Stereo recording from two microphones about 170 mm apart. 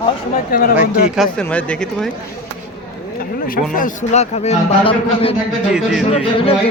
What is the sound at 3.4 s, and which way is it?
A man's voice, 55° left (ahead or behind).